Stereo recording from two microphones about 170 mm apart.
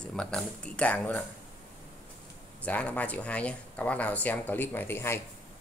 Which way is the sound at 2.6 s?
10° left (ahead or behind).